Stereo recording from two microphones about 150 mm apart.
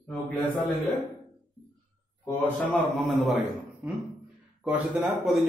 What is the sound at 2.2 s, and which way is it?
Speech, 10° left (ahead or behind).